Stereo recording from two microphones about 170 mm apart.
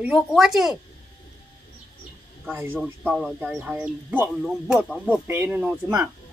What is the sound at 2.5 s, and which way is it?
Speech, 15° right (ahead or behind).